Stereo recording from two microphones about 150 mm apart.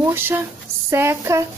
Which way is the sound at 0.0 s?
15° right (ahead or behind).